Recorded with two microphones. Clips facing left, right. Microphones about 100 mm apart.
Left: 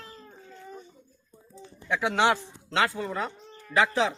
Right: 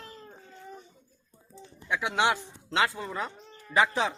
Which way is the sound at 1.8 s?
10° right (ahead or behind).